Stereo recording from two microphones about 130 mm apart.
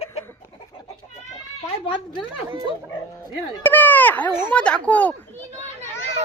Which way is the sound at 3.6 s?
15° left (ahead or behind).